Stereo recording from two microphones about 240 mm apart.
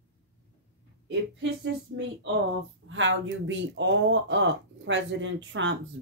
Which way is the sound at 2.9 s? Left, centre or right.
Right.